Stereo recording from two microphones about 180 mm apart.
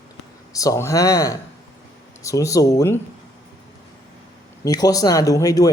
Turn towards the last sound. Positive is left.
turn(degrees=20)  # may be behind; listen again after turning